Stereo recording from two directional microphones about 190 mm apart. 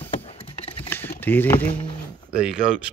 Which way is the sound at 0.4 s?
30° left (ahead or behind).